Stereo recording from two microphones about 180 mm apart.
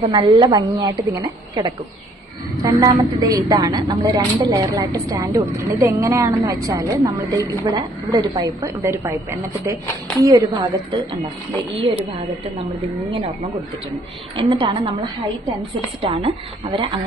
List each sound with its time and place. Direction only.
0.0 s a woman's voice: 25° right (ahead or behind)
14.4 s a woman's voice: 25° right (ahead or behind)
16.0 s a woman's voice: 30° right (ahead or behind)